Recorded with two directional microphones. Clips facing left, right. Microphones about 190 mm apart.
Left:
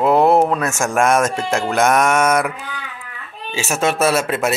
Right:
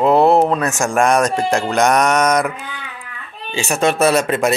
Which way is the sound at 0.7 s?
15° right (ahead or behind).